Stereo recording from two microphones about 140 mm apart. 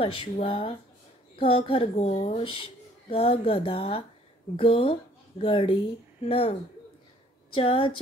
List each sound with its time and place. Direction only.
0.0 s speech: 40° left (ahead or behind)
7.5 s speech: 40° left (ahead or behind)